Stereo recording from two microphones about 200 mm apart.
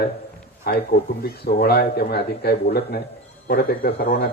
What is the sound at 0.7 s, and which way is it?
A man's voice, 50° left (ahead or behind).